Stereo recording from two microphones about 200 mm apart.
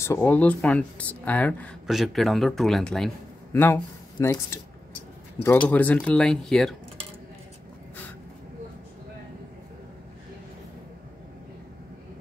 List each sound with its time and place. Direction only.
0.0 s speech: 10° left (ahead or behind)
5.7 s speech: 10° left (ahead or behind)